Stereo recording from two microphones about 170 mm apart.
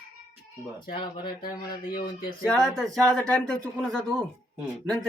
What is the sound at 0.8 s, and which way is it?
Speech, 25° left (ahead or behind).